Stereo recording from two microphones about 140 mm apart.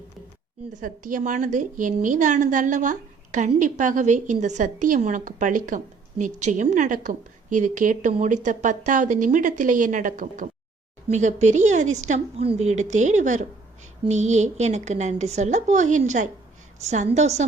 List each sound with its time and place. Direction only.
0.8 s a woman's voice: 70° right (ahead or behind)
11.1 s a woman's voice: 55° right (ahead or behind)